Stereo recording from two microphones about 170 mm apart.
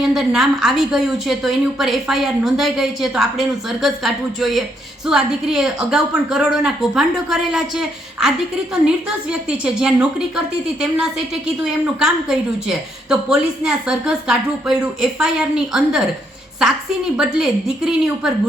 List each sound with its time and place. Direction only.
0.0 s a woman's voice: 5° right (ahead or behind)
17.2 s a woman's voice: 5° right (ahead or behind)